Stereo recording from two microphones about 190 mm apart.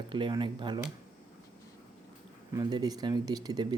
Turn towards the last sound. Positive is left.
turn(degrees=-20)  # may be behind; listen again after turning